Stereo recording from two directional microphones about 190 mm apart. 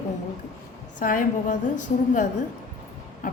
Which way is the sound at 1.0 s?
45° left (ahead or behind).